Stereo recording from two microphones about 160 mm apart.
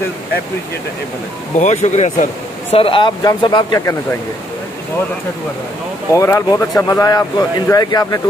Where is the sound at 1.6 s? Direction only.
45° left (ahead or behind).